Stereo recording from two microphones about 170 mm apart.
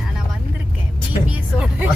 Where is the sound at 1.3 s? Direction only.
5° right (ahead or behind).